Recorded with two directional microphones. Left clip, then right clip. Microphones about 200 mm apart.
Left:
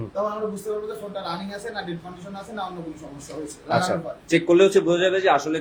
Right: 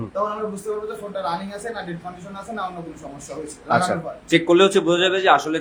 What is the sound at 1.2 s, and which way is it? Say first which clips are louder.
Speech: right 8 dB; 15° right (ahead or behind).